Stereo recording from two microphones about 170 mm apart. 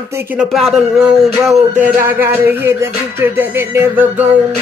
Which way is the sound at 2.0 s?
15° right (ahead or behind).